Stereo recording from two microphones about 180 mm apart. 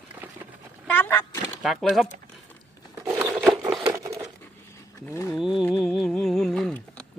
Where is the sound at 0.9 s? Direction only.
10° left (ahead or behind).